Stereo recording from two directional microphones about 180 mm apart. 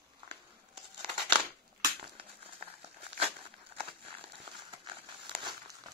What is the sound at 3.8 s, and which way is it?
Crumpling, 30° right (ahead or behind).